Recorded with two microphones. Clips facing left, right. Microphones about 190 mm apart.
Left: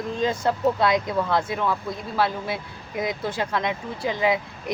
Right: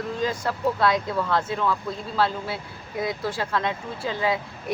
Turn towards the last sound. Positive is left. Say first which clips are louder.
# left 2 dB
turn(degrees=15)  # may be behind; listen again after turning